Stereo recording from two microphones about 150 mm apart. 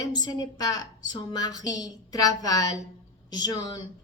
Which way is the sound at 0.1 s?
25° left (ahead or behind).